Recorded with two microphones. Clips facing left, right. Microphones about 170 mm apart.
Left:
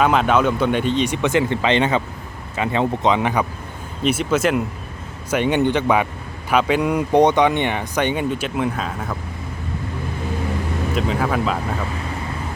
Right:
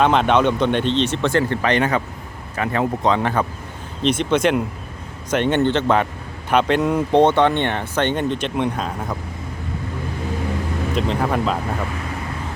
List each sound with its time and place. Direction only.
0.0 s speech: 5° left (ahead or behind)
10.9 s speech: 5° left (ahead or behind)